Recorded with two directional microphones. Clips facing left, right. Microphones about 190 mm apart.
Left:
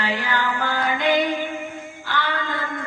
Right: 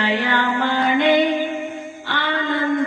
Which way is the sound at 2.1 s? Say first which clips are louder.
Right 2 dB; 25° right (ahead or behind).